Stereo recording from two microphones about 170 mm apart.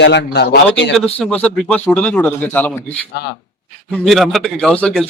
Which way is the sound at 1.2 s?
5° left (ahead or behind).